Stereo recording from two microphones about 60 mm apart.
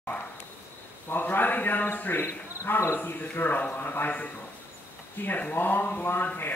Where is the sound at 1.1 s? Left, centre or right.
Left.